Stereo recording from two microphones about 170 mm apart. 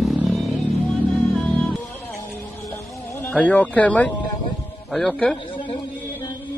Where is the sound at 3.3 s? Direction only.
10° left (ahead or behind).